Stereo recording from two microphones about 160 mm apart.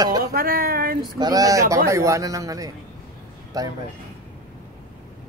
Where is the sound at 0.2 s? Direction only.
65° right (ahead or behind).